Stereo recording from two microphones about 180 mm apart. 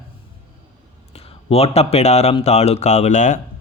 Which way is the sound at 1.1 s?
35° left (ahead or behind).